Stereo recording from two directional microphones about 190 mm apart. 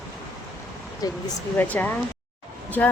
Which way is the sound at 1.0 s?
20° left (ahead or behind).